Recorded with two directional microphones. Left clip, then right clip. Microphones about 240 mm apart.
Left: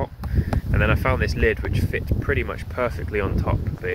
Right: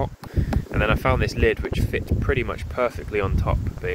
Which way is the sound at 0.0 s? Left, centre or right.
Centre.